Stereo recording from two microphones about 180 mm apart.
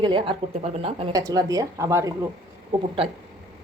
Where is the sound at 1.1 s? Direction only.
20° right (ahead or behind).